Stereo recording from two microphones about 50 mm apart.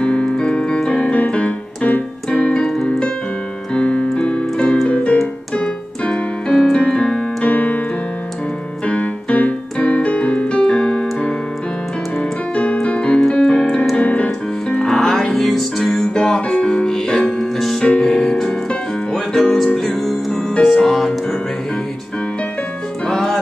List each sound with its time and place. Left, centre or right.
0.0 s keyboard: left
2.4 s keyboard: centre
7.4 s keyboard: left
8.8 s keyboard: left
14.8 s music: centre
16.3 s music: left; by 21.4 s centre
23.0 s music: centre